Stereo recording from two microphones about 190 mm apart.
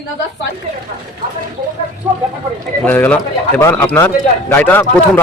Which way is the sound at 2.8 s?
10° left (ahead or behind).